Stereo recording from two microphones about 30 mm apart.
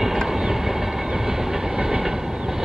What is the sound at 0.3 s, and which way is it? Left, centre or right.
Train, centre.